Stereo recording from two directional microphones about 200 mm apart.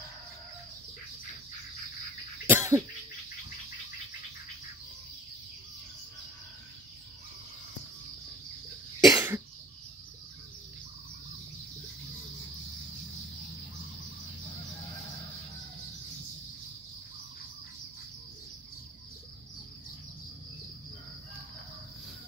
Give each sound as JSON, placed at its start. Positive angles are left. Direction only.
{"t": 2.4, "sound": "cough", "side_deg": -10}
{"t": 9.0, "sound": "cough", "side_deg": -15}